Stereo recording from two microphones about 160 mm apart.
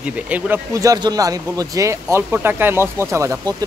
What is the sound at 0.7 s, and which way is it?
Speech, 20° right (ahead or behind).